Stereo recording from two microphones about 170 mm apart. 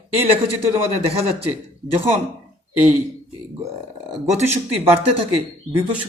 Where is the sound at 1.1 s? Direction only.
35° right (ahead or behind).